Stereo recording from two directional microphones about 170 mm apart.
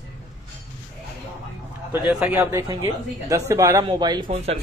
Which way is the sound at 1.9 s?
10° right (ahead or behind).